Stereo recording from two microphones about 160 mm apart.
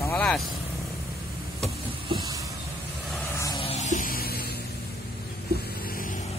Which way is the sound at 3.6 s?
40° left (ahead or behind).